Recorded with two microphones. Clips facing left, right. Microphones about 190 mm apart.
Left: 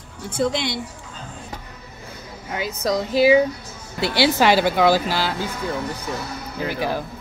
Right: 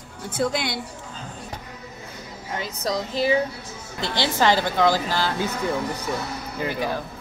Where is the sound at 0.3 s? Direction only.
Centre (ahead or behind).